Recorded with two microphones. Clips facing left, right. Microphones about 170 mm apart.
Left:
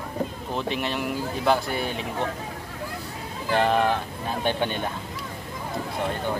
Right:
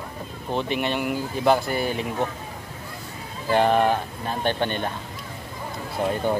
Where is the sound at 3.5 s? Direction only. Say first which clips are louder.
Right 3 dB; centre (ahead or behind).